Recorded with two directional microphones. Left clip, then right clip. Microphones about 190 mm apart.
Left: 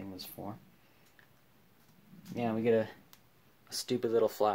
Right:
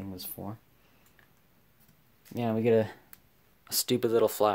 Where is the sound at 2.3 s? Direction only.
45° right (ahead or behind).